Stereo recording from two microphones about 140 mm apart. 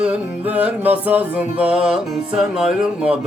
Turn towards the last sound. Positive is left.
turn(degrees=-5)  # may be behind; listen again after turning